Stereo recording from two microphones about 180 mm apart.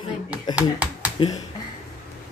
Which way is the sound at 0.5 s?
10° right (ahead or behind).